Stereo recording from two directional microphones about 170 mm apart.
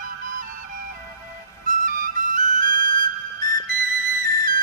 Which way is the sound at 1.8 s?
50° right (ahead or behind).